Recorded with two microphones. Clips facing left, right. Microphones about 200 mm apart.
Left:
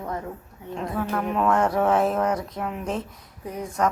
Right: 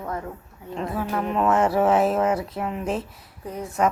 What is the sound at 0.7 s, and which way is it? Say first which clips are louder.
A woman's voice: even; centre (ahead or behind).